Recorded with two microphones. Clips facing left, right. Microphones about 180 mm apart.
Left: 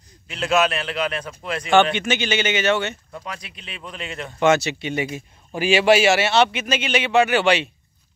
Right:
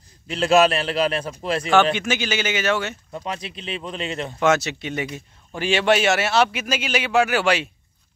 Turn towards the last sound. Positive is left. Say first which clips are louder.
# left 2 dB
turn(degrees=0)  # may be behind; listen again after turning